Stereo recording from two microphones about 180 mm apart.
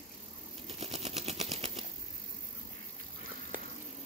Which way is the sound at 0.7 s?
35° right (ahead or behind).